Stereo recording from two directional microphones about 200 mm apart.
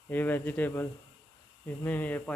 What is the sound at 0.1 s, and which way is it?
Speech, 10° left (ahead or behind).